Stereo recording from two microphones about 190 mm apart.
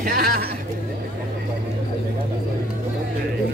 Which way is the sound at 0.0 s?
50° right (ahead or behind).